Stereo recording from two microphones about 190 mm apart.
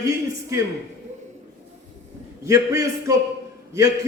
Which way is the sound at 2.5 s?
15° right (ahead or behind).